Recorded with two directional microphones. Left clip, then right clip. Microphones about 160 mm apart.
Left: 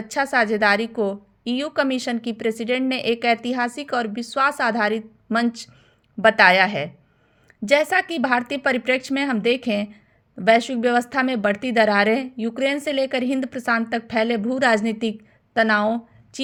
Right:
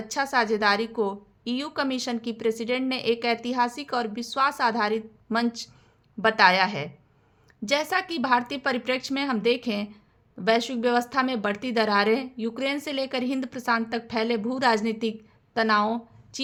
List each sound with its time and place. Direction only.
0.1 s a woman's voice: 25° left (ahead or behind)